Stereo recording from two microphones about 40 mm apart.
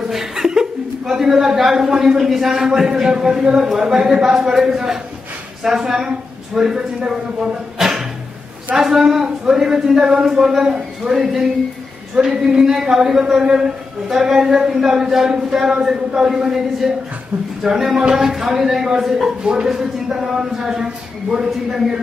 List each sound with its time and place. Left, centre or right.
0.1 s chuckle: centre
0.5 s a woman's voice: centre
7.8 s a sound: centre
8.7 s speech: centre
19.2 s speech: right